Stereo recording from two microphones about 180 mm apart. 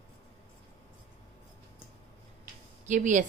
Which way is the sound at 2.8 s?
45° right (ahead or behind).